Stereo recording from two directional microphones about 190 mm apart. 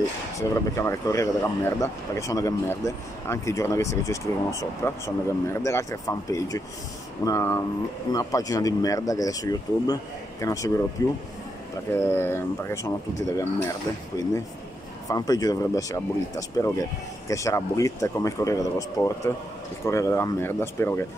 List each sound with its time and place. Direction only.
0.4 s speech: 15° left (ahead or behind)
14.1 s speech: 20° left (ahead or behind)